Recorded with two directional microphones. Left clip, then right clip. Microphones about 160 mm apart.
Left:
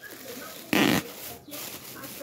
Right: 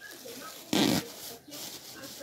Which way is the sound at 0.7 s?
5° left (ahead or behind).